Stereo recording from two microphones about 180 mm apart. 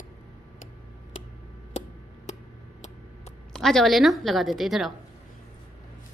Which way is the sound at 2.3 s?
40° left (ahead or behind).